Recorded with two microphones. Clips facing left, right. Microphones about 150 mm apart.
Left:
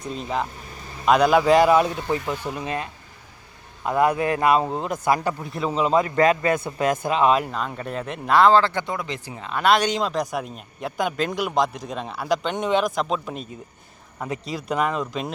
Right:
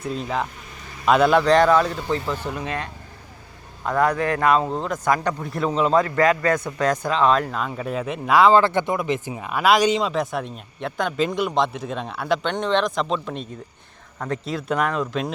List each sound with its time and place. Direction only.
0.0 s speech: centre (ahead or behind)
3.8 s speech: 10° left (ahead or behind)
6.0 s a man's voice: 25° left (ahead or behind)
7.2 s speech: 10° left (ahead or behind)
8.5 s speech: 20° right (ahead or behind); by 15.3 s centre (ahead or behind)